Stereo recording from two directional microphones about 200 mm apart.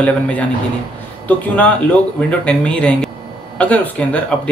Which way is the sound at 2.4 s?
5° left (ahead or behind).